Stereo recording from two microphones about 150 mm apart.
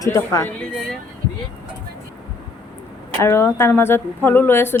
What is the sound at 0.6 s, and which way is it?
Speech, 5° left (ahead or behind).